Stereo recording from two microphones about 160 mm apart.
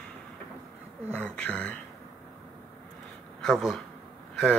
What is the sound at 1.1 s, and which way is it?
Speech, 10° left (ahead or behind).